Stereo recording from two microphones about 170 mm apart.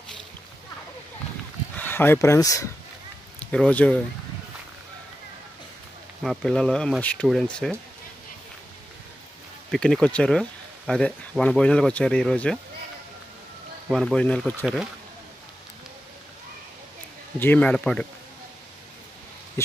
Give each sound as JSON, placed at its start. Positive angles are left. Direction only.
{"t": 1.8, "sound": "speech", "side_deg": 10}
{"t": 3.3, "sound": "speech", "side_deg": 5}
{"t": 6.2, "sound": "speech", "side_deg": 5}
{"t": 9.7, "sound": "speech", "side_deg": 0}
{"t": 13.8, "sound": "speech", "side_deg": 0}
{"t": 17.4, "sound": "speech", "side_deg": 10}